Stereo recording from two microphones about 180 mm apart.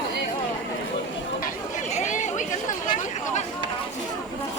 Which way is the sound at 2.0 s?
40° left (ahead or behind).